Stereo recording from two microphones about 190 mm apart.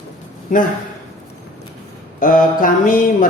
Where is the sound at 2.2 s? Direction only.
45° left (ahead or behind).